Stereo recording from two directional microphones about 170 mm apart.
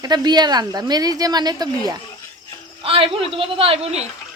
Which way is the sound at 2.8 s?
35° right (ahead or behind).